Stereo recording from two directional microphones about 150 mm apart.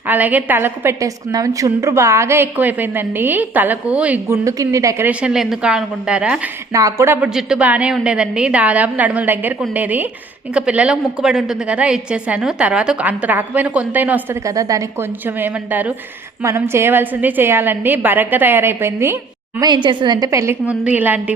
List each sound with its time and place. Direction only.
0.1 s a woman's voice: 10° right (ahead or behind)
4.4 s a woman's voice: 20° right (ahead or behind)
5.2 s a woman's voice: 5° right (ahead or behind)
6.7 s a woman's voice: 20° right (ahead or behind)
14.5 s a woman's voice: 25° right (ahead or behind)
15.4 s a woman's voice: 15° right (ahead or behind)
19.5 s a woman's voice: 30° right (ahead or behind)
20.7 s a woman's voice: 10° right (ahead or behind)